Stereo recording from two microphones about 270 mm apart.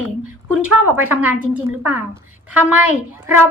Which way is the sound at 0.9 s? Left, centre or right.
Centre.